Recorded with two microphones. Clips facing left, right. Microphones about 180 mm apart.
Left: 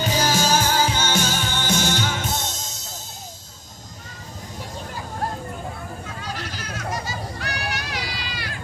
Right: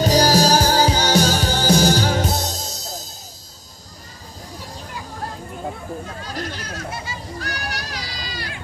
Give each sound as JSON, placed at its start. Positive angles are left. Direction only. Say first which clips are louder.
{"t": 0.0, "sound": "music", "louder": "right 6 dB", "side_deg": -35}
{"t": 7.3, "sound": "music", "louder": "even", "side_deg": -40}